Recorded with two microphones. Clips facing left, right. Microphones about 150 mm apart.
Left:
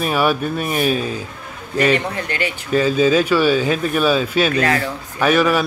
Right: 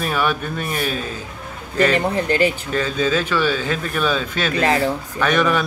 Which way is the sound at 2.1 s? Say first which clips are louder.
Right 6 dB; 40° right (ahead or behind).